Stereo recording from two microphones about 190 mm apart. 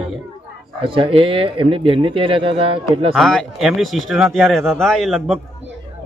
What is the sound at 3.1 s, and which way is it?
Speech, centre (ahead or behind).